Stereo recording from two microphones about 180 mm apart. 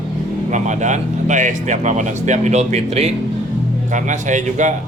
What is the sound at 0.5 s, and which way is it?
A man's voice, 40° right (ahead or behind).